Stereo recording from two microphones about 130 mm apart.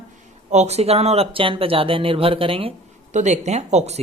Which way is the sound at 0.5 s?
60° right (ahead or behind).